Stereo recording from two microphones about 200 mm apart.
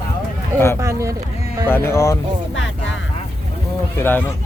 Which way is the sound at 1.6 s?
10° left (ahead or behind).